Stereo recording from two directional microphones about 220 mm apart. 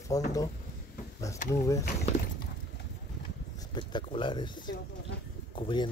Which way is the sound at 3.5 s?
20° left (ahead or behind).